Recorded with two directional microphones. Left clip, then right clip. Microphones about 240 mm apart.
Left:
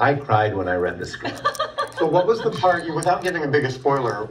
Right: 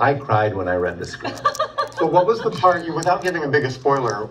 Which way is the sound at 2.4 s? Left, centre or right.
Centre.